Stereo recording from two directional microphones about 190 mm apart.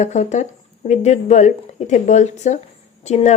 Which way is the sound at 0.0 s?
40° left (ahead or behind).